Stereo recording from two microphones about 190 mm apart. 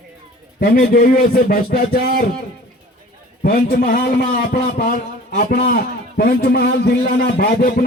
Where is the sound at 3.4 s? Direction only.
45° left (ahead or behind).